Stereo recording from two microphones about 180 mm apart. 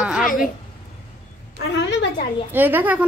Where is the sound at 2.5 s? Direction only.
10° right (ahead or behind).